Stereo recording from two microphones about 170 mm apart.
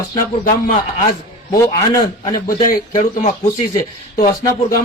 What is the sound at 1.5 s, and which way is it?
Speech, 20° left (ahead or behind).